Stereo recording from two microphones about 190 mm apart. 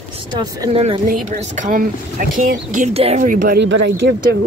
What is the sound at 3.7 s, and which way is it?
Speech, 65° right (ahead or behind).